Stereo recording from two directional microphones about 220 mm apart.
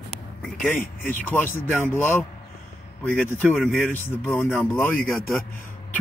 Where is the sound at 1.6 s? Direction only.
10° left (ahead or behind).